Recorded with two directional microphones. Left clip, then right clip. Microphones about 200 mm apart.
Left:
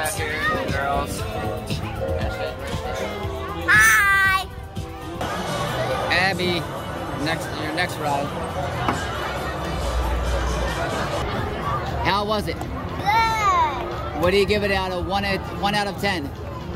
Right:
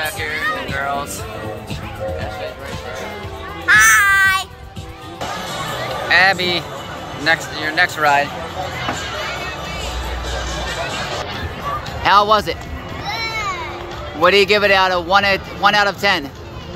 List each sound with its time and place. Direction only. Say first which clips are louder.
3.6 s music: right 4 dB; 5° left (ahead or behind)
6.0 s a man's voice: right 10 dB; 5° left (ahead or behind)
12.0 s a man's voice: right 11 dB; centre (ahead or behind)
13.1 s a sound: left 4 dB; 20° left (ahead or behind)
14.2 s a man's voice: right 8 dB; centre (ahead or behind)